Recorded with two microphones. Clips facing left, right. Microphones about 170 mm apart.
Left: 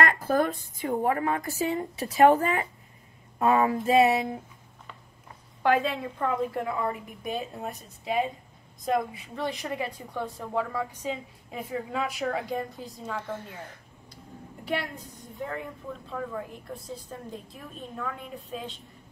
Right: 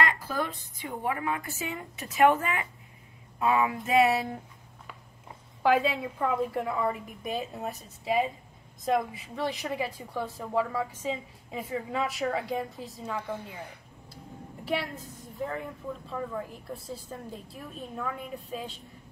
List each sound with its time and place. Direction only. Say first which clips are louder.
0.0 s a woman's voice: left 5 dB; 50° left (ahead or behind)
3.9 s a sound: left 2 dB; 20° left (ahead or behind)
5.6 s a woman's voice: even; centre (ahead or behind)